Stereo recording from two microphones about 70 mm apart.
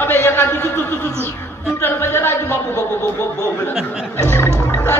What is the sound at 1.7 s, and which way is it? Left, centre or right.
A man's voice, left.